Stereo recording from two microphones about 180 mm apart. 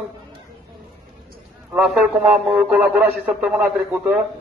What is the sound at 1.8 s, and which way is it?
A man's voice, centre (ahead or behind).